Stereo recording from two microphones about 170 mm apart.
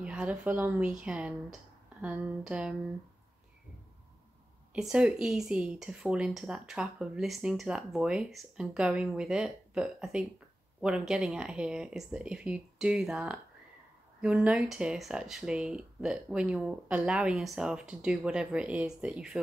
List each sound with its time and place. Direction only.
0.0 s speech: 5° right (ahead or behind)
4.7 s speech: 5° right (ahead or behind)